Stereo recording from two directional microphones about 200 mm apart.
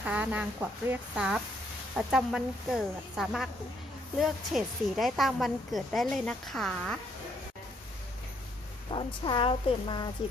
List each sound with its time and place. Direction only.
0.0 s a woman's voice: 10° right (ahead or behind)
8.9 s a woman's voice: 25° left (ahead or behind)